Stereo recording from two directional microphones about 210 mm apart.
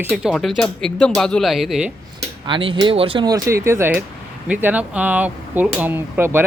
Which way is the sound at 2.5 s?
25° right (ahead or behind).